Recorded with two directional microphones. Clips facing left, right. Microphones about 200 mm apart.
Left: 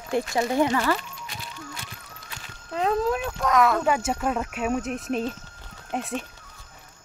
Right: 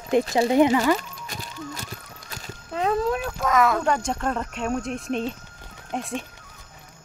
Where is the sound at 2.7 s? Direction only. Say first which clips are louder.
Even; centre (ahead or behind).